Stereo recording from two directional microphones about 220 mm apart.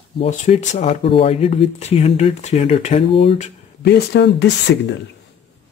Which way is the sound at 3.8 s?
50° left (ahead or behind).